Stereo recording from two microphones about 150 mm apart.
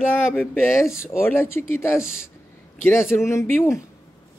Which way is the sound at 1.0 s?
15° left (ahead or behind).